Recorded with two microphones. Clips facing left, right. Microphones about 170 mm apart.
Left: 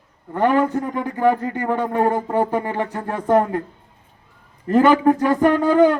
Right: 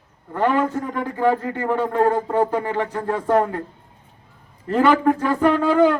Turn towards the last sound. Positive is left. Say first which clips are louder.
# left 2 dB
turn(degrees=15)  # may be behind; listen again after turning